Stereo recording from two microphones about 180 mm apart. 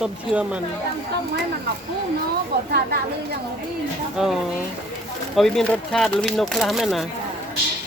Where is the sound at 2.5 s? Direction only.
60° right (ahead or behind).